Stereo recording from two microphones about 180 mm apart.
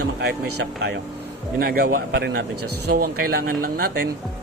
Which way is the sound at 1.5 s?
55° right (ahead or behind).